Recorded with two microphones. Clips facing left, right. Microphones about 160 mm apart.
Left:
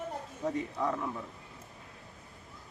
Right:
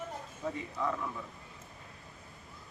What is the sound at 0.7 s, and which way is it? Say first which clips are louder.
Speech: left 2 dB; 30° left (ahead or behind).